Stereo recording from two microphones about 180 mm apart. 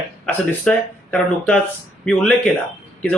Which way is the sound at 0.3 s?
5° left (ahead or behind).